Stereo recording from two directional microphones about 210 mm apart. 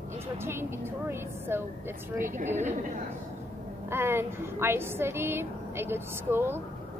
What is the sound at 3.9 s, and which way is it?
A woman's voice, 10° right (ahead or behind).